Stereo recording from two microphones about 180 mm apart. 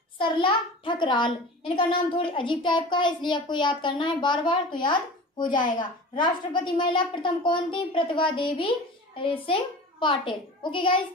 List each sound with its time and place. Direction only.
0.2 s a child's voice: 30° left (ahead or behind)